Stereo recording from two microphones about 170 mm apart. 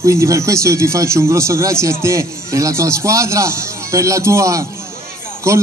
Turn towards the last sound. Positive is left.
turn(degrees=-15)  # may be behind; listen again after turning